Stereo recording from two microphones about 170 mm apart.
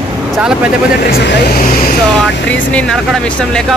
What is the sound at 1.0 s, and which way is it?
Speech, 65° left (ahead or behind).